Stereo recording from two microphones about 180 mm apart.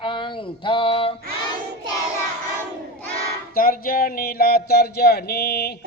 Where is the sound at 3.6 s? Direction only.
55° left (ahead or behind).